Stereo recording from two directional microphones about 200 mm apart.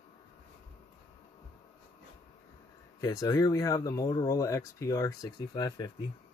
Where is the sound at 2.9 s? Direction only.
15° left (ahead or behind).